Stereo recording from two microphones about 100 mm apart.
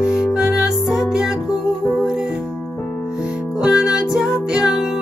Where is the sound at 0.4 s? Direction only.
5° right (ahead or behind).